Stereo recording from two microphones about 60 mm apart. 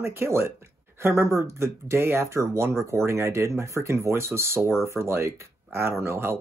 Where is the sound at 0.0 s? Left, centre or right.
Right.